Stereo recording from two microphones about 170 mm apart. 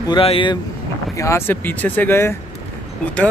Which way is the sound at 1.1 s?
15° left (ahead or behind).